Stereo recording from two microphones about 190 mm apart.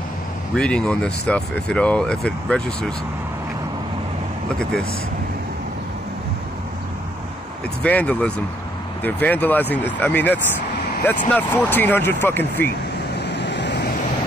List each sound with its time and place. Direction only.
0.6 s speech: 5° left (ahead or behind)
7.8 s speech: 5° left (ahead or behind)
13.3 s vehicle: 65° left (ahead or behind)